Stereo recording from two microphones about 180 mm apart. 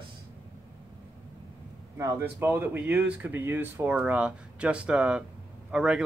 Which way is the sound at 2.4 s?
10° right (ahead or behind).